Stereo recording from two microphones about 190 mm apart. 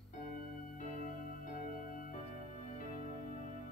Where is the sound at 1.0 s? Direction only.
45° left (ahead or behind).